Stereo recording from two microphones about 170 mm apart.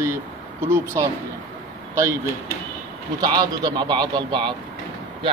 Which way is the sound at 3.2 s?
25° right (ahead or behind).